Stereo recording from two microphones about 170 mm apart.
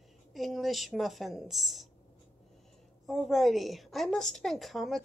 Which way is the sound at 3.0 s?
Centre (ahead or behind).